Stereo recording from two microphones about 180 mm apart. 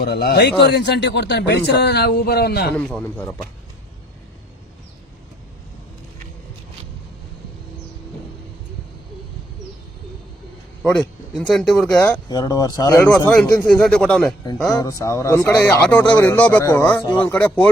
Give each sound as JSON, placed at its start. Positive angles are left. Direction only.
{"t": 0.0, "sound": "speech", "side_deg": 60}
{"t": 2.7, "sound": "speech", "side_deg": 5}
{"t": 11.3, "sound": "speech", "side_deg": 0}
{"t": 12.3, "sound": "speech", "side_deg": 20}
{"t": 13.1, "sound": "speech", "side_deg": 5}
{"t": 14.8, "sound": "speech", "side_deg": 15}